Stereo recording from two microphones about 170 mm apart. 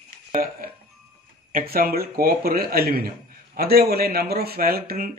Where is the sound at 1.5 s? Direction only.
60° right (ahead or behind).